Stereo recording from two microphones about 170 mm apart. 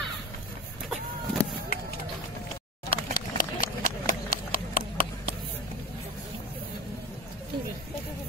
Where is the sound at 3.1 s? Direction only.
55° left (ahead or behind).